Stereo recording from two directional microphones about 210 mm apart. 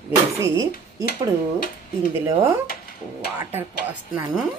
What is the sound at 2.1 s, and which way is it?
A woman's voice, 15° right (ahead or behind).